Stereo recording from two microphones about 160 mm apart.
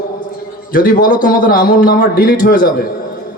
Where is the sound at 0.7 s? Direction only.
60° left (ahead or behind).